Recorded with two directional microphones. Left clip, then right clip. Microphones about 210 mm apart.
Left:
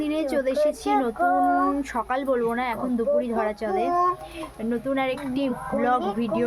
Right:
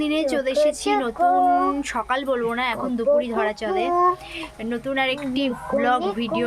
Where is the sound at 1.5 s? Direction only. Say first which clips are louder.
Right 3 dB; 40° right (ahead or behind).